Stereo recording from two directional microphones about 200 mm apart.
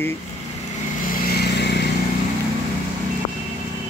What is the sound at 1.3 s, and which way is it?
Vehicle, 55° left (ahead or behind).